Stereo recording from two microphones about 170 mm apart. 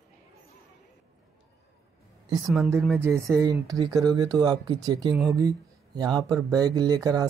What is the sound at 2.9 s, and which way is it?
Speech, 15° right (ahead or behind).